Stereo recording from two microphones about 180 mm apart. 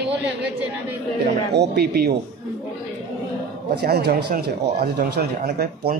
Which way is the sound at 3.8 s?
60° right (ahead or behind).